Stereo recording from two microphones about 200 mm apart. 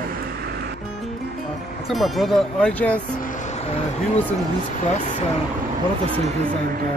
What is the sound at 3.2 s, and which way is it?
Vehicle, 40° left (ahead or behind).